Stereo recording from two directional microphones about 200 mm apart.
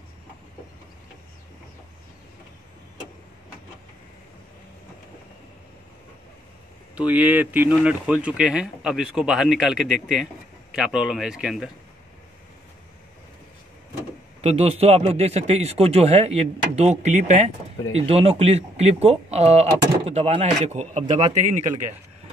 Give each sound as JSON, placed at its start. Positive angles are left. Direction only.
{"t": 7.0, "sound": "speech", "side_deg": -10}
{"t": 14.4, "sound": "speech", "side_deg": -30}